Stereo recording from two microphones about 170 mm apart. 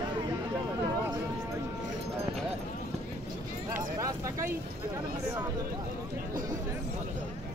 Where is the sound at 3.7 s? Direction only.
20° right (ahead or behind).